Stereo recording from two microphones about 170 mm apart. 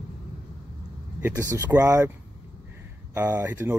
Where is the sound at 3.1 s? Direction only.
15° right (ahead or behind).